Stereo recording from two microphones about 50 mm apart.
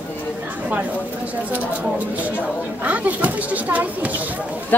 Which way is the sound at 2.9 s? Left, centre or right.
Right.